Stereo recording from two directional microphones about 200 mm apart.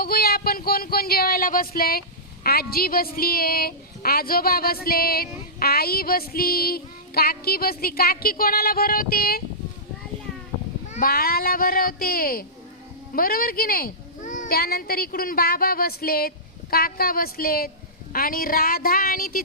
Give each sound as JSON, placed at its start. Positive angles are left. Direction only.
{"t": 0.0, "sound": "speech", "side_deg": 50}
{"t": 10.9, "sound": "speech", "side_deg": 45}